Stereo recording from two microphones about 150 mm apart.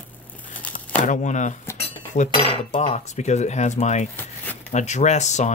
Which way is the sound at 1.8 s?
55° left (ahead or behind).